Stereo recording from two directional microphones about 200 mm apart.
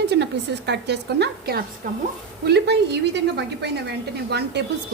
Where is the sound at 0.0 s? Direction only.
55° right (ahead or behind).